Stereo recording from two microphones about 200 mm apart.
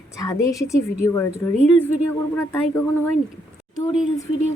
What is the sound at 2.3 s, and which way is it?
Speech, 15° left (ahead or behind).